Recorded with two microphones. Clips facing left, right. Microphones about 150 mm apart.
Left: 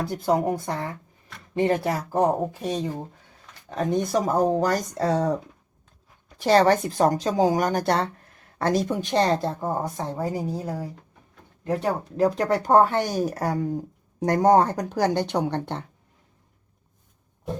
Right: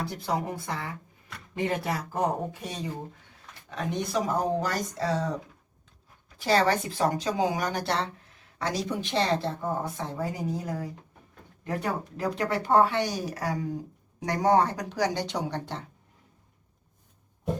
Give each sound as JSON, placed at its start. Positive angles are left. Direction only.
{"t": 0.0, "sound": "speech", "side_deg": 50}
{"t": 1.5, "sound": "speech", "side_deg": 30}
{"t": 3.7, "sound": "speech", "side_deg": 45}
{"t": 6.4, "sound": "speech", "side_deg": 45}